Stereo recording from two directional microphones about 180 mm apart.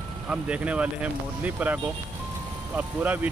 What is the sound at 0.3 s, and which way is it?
Speech, 5° right (ahead or behind).